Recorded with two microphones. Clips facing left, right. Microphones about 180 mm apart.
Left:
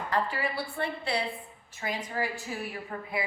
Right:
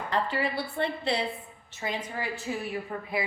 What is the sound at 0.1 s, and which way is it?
A woman's voice, 25° right (ahead or behind).